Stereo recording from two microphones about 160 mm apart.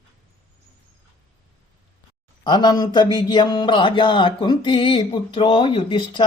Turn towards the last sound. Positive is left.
turn(degrees=30)  # may be behind; listen again after turning